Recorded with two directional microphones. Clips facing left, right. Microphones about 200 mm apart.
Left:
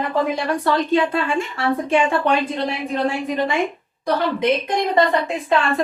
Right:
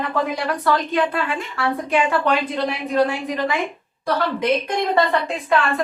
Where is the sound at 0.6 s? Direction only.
25° left (ahead or behind).